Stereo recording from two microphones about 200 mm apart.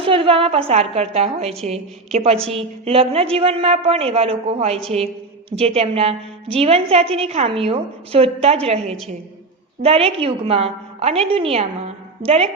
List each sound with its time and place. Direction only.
0.0 s a woman's voice: 25° right (ahead or behind)